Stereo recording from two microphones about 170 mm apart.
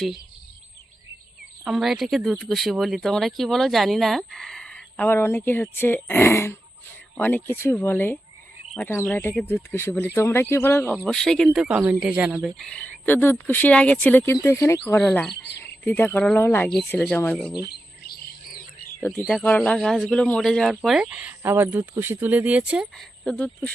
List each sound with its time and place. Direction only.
1.6 s speech: centre (ahead or behind)
17.7 s chirp: 65° left (ahead or behind)
19.3 s speech: 5° left (ahead or behind)